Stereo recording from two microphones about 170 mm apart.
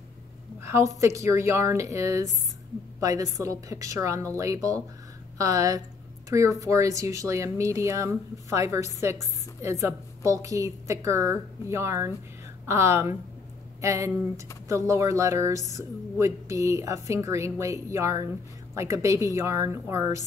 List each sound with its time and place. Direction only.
0.6 s a woman's voice: 15° right (ahead or behind)